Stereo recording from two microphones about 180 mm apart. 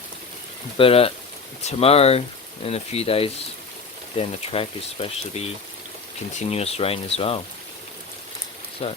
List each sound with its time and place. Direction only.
0.8 s speech: 30° left (ahead or behind)
6.5 s speech: 35° left (ahead or behind)
8.8 s speech: 35° left (ahead or behind)